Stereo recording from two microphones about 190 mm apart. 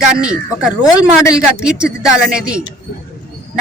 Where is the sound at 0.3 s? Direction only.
5° right (ahead or behind).